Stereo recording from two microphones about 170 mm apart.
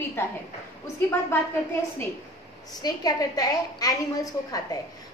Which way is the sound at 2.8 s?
25° left (ahead or behind).